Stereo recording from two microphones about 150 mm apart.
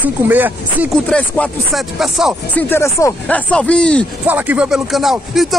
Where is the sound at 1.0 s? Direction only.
10° left (ahead or behind).